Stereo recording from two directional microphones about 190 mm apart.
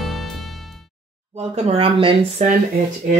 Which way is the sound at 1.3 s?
35° right (ahead or behind).